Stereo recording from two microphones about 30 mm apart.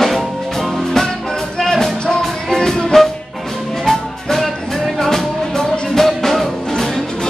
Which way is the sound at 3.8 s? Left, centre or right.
Centre.